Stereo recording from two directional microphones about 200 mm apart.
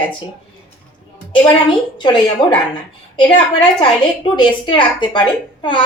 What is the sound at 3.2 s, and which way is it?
A woman's voice, 20° left (ahead or behind).